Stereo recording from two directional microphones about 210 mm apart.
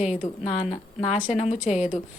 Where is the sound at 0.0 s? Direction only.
35° left (ahead or behind).